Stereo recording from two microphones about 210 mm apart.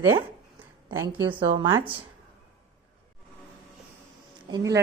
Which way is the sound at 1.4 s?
25° right (ahead or behind).